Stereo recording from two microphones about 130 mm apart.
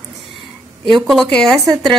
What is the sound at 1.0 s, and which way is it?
Speech, 5° left (ahead or behind).